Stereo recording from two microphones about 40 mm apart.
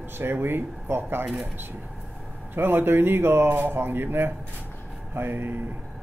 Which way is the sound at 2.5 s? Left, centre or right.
Right.